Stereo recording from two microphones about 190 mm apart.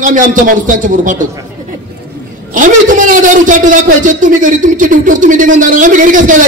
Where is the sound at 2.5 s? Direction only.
45° right (ahead or behind).